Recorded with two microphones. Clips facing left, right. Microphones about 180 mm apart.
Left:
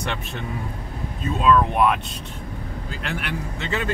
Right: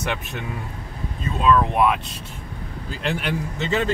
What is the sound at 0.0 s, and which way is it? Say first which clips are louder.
Speech: right 1 dB; 10° right (ahead or behind).